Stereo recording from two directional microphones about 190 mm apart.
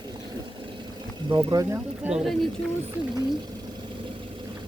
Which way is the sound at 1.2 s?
25° right (ahead or behind).